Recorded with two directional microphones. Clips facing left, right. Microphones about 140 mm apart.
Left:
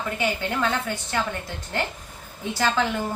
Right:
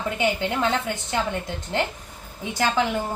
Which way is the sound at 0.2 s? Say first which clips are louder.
Right 2 dB; 20° right (ahead or behind).